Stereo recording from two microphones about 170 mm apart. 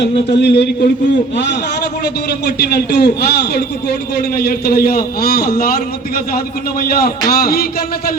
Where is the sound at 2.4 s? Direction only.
70° left (ahead or behind).